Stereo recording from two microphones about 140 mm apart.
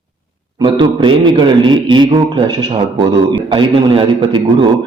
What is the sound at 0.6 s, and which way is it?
A man's voice, 35° right (ahead or behind).